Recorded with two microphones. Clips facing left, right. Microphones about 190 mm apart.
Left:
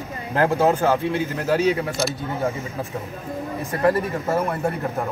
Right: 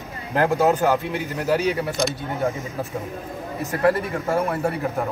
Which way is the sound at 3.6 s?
30° left (ahead or behind).